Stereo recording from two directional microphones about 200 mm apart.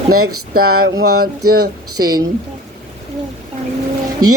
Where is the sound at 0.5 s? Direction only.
50° right (ahead or behind).